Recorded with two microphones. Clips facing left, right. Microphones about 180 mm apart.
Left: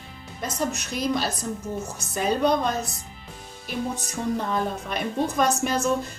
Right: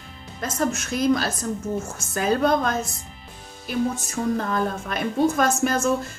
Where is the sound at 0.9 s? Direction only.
Centre (ahead or behind).